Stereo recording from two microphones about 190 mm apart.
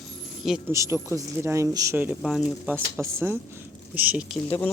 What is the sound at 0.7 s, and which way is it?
Speech, 15° right (ahead or behind).